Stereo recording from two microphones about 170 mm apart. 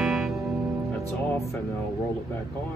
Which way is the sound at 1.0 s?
15° left (ahead or behind).